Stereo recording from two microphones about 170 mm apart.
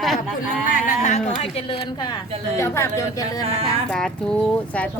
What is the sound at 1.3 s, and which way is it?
Speech, 35° left (ahead or behind).